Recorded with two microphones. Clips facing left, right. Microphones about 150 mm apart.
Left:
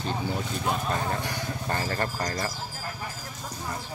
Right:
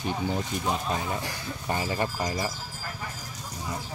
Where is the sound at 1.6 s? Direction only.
10° right (ahead or behind).